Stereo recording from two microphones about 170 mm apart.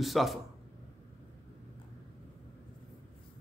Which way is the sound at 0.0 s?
Centre (ahead or behind).